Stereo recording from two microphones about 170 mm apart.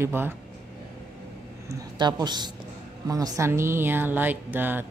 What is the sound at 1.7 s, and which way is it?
A woman's voice, 25° right (ahead or behind).